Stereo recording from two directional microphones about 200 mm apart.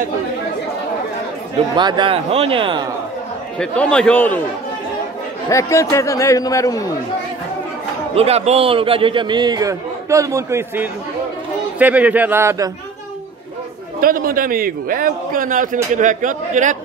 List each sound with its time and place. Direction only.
1.8 s a man's voice: 25° right (ahead or behind)
3.5 s a man's voice: 5° left (ahead or behind)
5.5 s speech: 15° left (ahead or behind)
8.1 s a man's voice: 30° right (ahead or behind); by 12.7 s 15° right (ahead or behind)
14.0 s a man's voice: 45° right (ahead or behind)